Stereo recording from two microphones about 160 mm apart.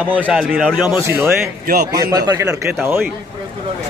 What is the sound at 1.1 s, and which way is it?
A man's voice, 15° right (ahead or behind).